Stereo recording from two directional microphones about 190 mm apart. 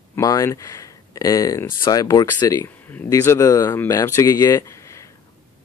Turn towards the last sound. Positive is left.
turn(degrees=15)  # may be behind; listen again after turning